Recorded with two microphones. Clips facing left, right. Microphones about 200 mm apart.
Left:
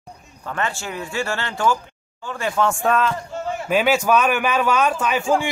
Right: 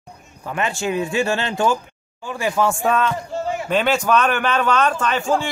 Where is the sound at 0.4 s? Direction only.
15° right (ahead or behind).